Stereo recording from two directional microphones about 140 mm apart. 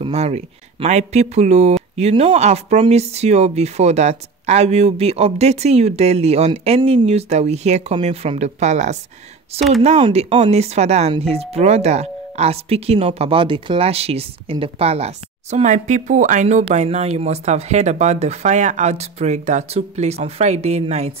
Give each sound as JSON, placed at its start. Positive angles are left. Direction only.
{"t": 0.0, "sound": "speech", "side_deg": -50}
{"t": 9.5, "sound": "speech", "side_deg": -45}